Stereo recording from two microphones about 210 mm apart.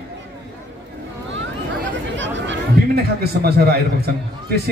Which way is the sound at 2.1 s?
60° right (ahead or behind).